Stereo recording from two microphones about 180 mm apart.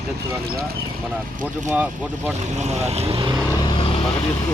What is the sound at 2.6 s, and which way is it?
Speech, 40° right (ahead or behind).